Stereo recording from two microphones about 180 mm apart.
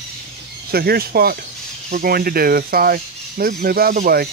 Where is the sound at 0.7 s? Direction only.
60° right (ahead or behind).